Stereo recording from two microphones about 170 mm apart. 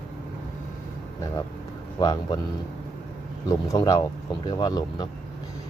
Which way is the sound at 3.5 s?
20° left (ahead or behind).